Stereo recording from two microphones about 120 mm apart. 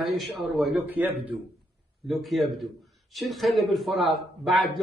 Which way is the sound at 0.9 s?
15° right (ahead or behind).